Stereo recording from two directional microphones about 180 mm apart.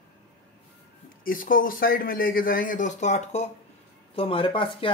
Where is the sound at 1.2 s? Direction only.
50° left (ahead or behind); by 4.9 s 30° left (ahead or behind).